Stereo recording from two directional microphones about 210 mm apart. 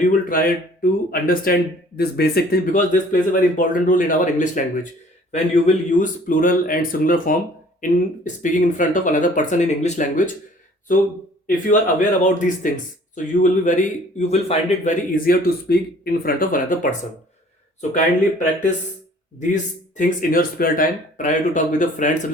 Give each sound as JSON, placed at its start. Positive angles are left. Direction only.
{"t": 0.0, "sound": "speech", "side_deg": 40}
{"t": 11.4, "sound": "speech", "side_deg": 40}
{"t": 20.0, "sound": "speech", "side_deg": 40}